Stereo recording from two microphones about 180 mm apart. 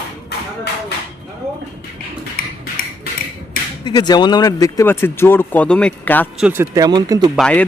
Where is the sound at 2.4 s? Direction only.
50° left (ahead or behind).